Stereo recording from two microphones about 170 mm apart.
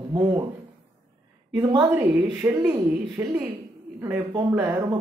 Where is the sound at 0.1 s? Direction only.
25° right (ahead or behind).